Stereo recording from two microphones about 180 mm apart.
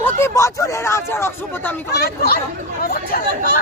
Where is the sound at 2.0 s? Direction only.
55° left (ahead or behind).